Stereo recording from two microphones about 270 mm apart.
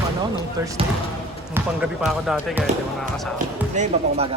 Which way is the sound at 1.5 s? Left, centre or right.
Centre.